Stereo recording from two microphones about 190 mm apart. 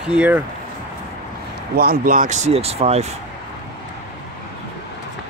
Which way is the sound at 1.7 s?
50° right (ahead or behind).